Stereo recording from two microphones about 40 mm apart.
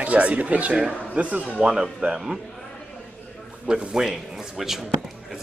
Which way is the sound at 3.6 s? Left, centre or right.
Centre.